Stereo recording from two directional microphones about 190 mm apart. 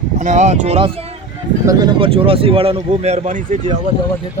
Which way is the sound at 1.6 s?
20° right (ahead or behind).